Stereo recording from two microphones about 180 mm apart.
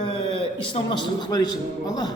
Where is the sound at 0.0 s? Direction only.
30° left (ahead or behind).